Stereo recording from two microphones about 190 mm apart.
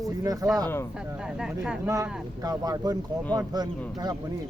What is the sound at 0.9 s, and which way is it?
Speech, 5° right (ahead or behind).